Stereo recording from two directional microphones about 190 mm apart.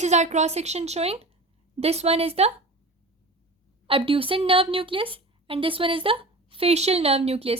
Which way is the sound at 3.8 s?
30° right (ahead or behind).